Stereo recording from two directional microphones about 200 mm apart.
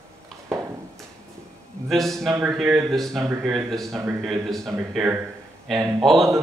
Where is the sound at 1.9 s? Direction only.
Centre (ahead or behind).